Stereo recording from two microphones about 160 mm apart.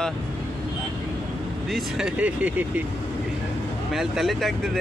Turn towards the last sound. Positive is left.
turn(degrees=0)  # may be behind; listen again after turning